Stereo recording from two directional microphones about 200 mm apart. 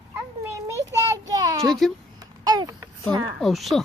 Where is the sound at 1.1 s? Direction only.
15° right (ahead or behind).